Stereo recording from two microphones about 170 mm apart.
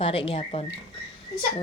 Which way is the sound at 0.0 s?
35° left (ahead or behind).